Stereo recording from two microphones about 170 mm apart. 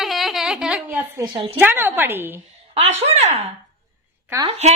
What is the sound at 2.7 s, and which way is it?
Speech, 40° right (ahead or behind).